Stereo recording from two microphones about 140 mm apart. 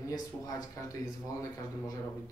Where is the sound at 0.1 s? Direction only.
25° left (ahead or behind).